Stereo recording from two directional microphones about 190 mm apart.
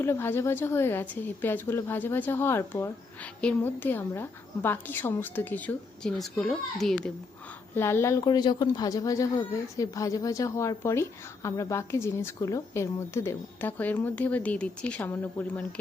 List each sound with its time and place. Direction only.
0.0 s a woman's voice: 10° left (ahead or behind)
7.8 s a woman's voice: 15° left (ahead or behind)